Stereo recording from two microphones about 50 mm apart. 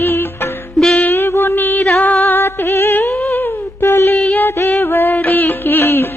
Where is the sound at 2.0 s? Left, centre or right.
Left.